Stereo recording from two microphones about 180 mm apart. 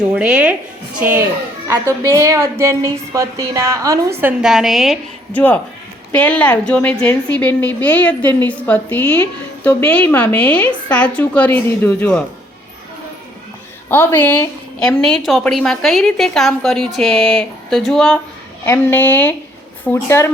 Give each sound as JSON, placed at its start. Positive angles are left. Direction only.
{"t": 0.1, "sound": "a woman's voice", "side_deg": -5}
{"t": 5.3, "sound": "a woman's voice", "side_deg": 10}
{"t": 13.9, "sound": "a woman's voice", "side_deg": 10}